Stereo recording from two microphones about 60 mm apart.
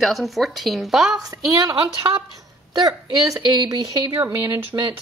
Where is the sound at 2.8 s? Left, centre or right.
Right.